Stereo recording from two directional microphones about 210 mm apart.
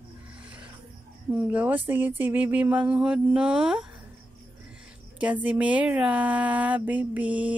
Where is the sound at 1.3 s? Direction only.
5° right (ahead or behind).